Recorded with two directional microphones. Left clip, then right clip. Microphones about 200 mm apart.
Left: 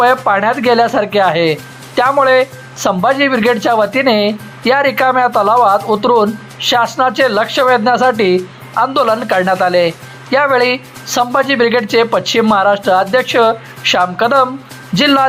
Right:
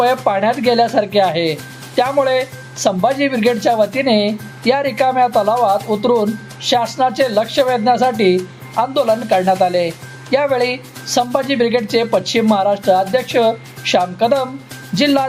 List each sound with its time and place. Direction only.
0.0 s speech: centre (ahead or behind)
5.9 s speech: 25° left (ahead or behind)
6.6 s speech: centre (ahead or behind)